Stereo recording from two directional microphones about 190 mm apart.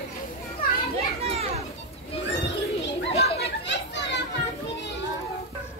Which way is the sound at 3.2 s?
65° left (ahead or behind).